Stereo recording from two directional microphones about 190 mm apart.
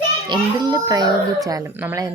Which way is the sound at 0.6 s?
20° right (ahead or behind).